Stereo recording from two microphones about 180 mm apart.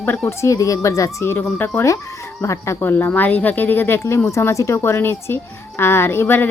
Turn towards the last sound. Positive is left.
turn(degrees=10)  # may be behind; listen again after turning